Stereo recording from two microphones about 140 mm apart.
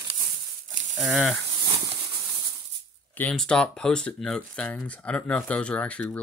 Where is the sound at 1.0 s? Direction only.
Centre (ahead or behind).